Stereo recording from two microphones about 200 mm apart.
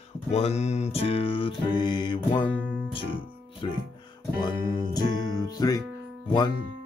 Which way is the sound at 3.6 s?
25° left (ahead or behind).